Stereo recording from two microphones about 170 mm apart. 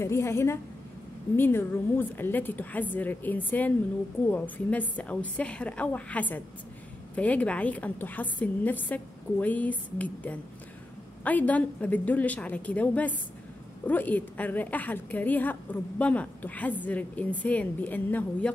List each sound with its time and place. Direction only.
0.0 s a woman's voice: 15° left (ahead or behind)